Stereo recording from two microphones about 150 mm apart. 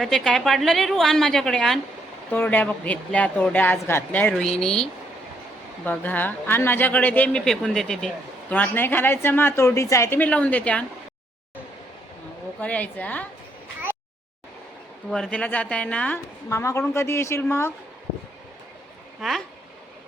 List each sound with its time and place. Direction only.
0.0 s a woman's voice: centre (ahead or behind)
2.3 s speech: 15° left (ahead or behind)
12.5 s speech: 10° left (ahead or behind)
15.1 s speech: 5° left (ahead or behind)
16.5 s speech: 20° left (ahead or behind)